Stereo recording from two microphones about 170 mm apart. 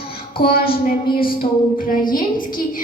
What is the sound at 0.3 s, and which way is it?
Speech, 65° left (ahead or behind).